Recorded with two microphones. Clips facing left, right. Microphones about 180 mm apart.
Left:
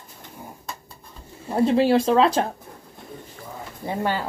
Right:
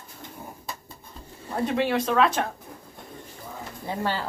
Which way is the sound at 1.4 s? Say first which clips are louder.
Left 7 dB; 30° left (ahead or behind).